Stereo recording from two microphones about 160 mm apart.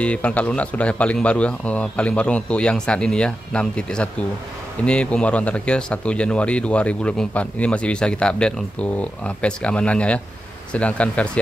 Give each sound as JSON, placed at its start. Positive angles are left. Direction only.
{"t": 0.0, "sound": "speech", "side_deg": 10}